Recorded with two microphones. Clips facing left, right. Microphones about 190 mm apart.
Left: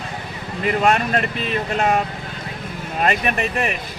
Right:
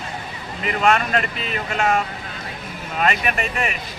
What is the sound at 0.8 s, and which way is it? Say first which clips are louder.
Speech: even; 40° left (ahead or behind).